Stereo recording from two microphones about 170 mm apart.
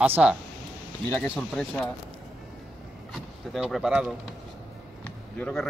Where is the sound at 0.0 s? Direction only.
10° right (ahead or behind).